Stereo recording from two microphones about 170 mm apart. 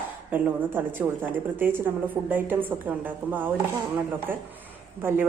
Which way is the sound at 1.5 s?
10° right (ahead or behind).